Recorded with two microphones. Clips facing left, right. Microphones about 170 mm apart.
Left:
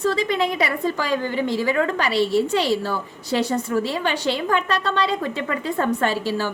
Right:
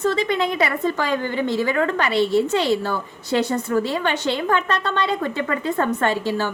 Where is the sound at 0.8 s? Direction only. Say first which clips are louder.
Right 1 dB; 35° left (ahead or behind).